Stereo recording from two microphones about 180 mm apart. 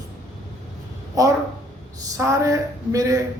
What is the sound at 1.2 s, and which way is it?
Speech, 20° right (ahead or behind).